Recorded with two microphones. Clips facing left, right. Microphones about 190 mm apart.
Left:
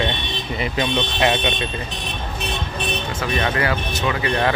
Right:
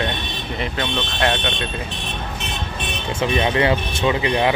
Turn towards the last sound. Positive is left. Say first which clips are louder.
# right 3 dB
turn(degrees=-20)  # may be behind; listen again after turning